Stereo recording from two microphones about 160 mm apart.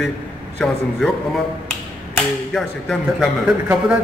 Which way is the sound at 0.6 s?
5° left (ahead or behind).